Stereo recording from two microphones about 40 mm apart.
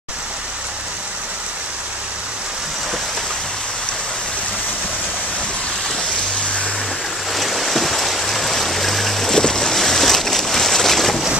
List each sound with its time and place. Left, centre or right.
7.3 s stream: centre